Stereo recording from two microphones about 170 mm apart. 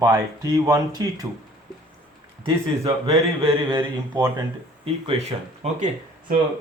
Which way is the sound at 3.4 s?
30° right (ahead or behind).